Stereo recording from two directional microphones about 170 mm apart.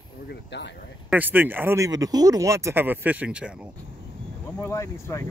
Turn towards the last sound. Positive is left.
turn(degrees=15)  # may be behind; listen again after turning